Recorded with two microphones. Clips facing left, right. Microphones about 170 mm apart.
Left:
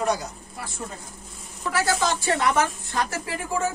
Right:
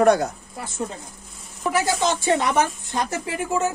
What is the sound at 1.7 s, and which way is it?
A woman's voice, 20° right (ahead or behind).